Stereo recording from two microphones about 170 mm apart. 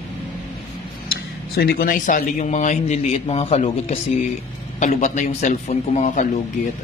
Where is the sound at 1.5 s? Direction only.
60° left (ahead or behind); by 6.3 s 45° left (ahead or behind).